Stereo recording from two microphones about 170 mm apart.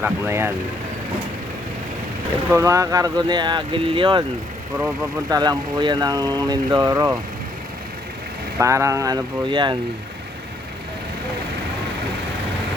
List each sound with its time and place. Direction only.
0.0 s speech: 15° right (ahead or behind)
2.5 s speech: 15° right (ahead or behind)
5.3 s speech: 25° right (ahead or behind)
8.5 s speech: 15° right (ahead or behind)